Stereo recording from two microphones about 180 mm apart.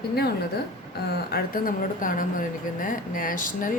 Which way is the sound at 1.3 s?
50° left (ahead or behind).